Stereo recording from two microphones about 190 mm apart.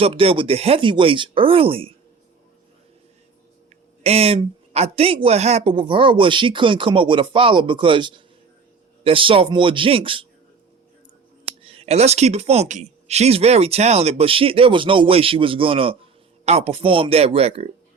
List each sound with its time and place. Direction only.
0.0 s speech: 30° right (ahead or behind)
4.0 s speech: 30° right (ahead or behind)
11.4 s speech: 30° right (ahead or behind)